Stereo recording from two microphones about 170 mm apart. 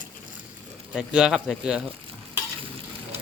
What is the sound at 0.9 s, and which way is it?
Speech, 5° right (ahead or behind).